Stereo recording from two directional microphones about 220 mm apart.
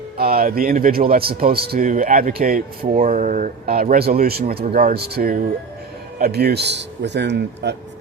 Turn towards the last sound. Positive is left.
turn(degrees=-50)  # may be behind; listen again after turning